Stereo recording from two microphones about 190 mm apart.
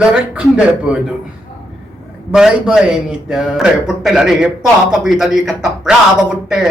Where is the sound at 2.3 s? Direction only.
5° right (ahead or behind).